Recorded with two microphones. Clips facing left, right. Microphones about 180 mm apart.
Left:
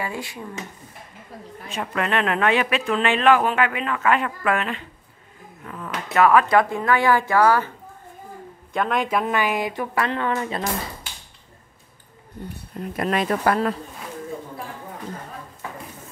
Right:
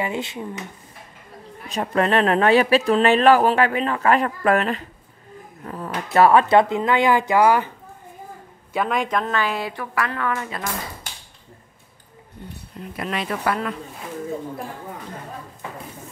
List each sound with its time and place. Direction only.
0.0 s speech: 20° right (ahead or behind)
1.7 s speech: 35° right (ahead or behind); by 7.7 s 15° right (ahead or behind)
8.7 s a man's voice: centre (ahead or behind)
9.2 s speech: 15° left (ahead or behind)
12.4 s speech: 40° left (ahead or behind)